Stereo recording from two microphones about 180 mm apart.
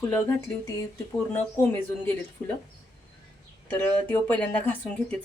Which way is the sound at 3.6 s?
10° left (ahead or behind).